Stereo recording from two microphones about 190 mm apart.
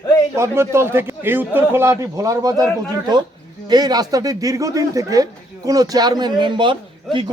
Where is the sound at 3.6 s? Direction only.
20° right (ahead or behind).